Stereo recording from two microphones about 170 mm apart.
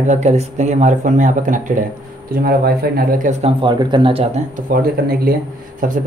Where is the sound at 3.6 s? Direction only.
25° right (ahead or behind).